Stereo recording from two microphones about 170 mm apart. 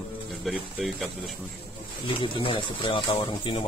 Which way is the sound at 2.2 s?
30° left (ahead or behind).